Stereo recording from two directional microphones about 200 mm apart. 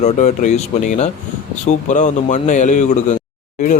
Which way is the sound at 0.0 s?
35° left (ahead or behind).